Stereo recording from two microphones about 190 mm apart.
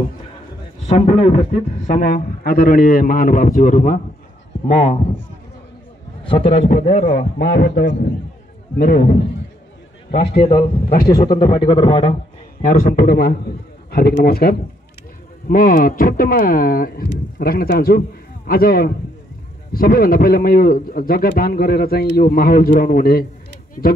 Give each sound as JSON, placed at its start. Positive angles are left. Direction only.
{"t": 0.8, "sound": "a man's voice", "side_deg": 35}
{"t": 6.2, "sound": "a man's voice", "side_deg": 30}
{"t": 7.8, "sound": "a man's voice", "side_deg": 75}
{"t": 8.7, "sound": "a man's voice", "side_deg": 45}
{"t": 10.4, "sound": "a man's voice", "side_deg": 30}
{"t": 12.6, "sound": "a man's voice", "side_deg": 45}